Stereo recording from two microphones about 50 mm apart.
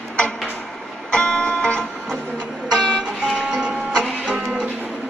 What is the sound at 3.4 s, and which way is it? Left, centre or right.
Music, centre.